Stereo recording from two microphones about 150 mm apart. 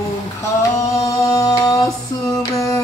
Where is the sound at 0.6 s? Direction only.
20° left (ahead or behind).